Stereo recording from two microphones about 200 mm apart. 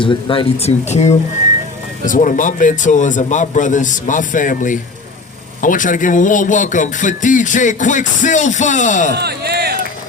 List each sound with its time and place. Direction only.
0.0 s speech: 25° left (ahead or behind)
9.1 s music: 55° right (ahead or behind)